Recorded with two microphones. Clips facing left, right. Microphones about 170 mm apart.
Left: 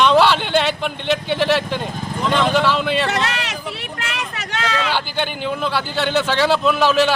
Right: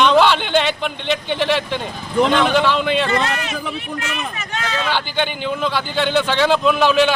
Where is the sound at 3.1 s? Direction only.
75° left (ahead or behind).